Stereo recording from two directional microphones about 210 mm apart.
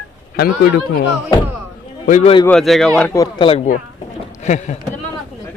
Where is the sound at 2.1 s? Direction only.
35° left (ahead or behind).